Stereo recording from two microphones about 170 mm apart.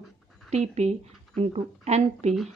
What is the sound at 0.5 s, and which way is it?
A woman's voice, 40° right (ahead or behind).